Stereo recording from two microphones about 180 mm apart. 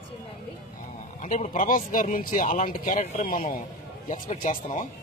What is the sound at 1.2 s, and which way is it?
Speech, 40° left (ahead or behind).